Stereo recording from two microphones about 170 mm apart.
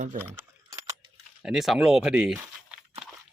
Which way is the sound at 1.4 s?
5° right (ahead or behind).